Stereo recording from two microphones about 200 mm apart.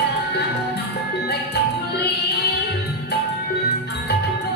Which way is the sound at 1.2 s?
55° left (ahead or behind).